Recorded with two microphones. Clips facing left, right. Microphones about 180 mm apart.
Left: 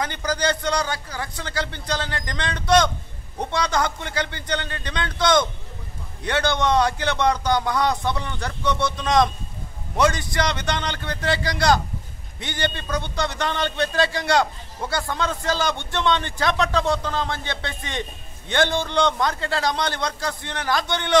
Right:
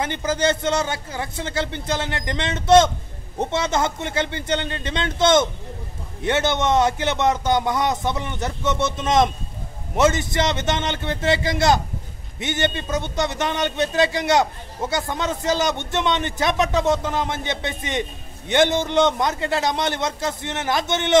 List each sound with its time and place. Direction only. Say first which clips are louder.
0.0 s a man's voice: right 3 dB; 25° right (ahead or behind)